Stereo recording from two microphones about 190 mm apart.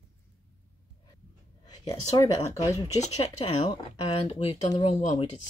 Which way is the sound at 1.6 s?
20° left (ahead or behind).